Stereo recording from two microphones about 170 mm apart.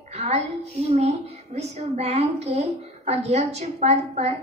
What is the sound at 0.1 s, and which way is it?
A woman's voice, 40° right (ahead or behind).